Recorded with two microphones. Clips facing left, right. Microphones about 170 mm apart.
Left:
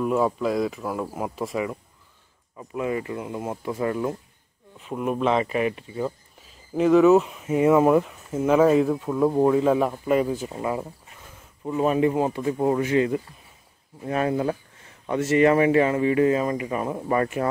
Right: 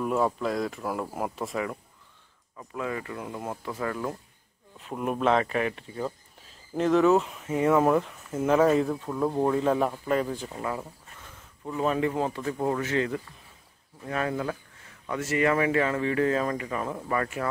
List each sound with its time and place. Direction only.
0.0 s speech: 5° left (ahead or behind)
2.5 s speech: 15° left (ahead or behind)
4.7 s speech: centre (ahead or behind)
10.5 s speech: 20° left (ahead or behind)